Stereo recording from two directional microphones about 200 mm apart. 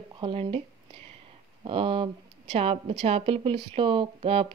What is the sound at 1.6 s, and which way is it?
A woman's voice, 25° right (ahead or behind).